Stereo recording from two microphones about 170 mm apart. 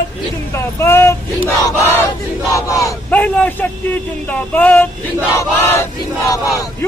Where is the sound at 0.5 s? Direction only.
15° left (ahead or behind).